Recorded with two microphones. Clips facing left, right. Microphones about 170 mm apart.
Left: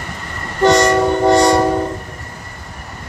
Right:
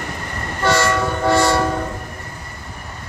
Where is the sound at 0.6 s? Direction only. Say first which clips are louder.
Left 6 dB; 20° left (ahead or behind).